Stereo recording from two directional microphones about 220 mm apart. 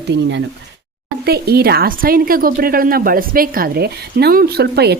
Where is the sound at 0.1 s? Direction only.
55° right (ahead or behind).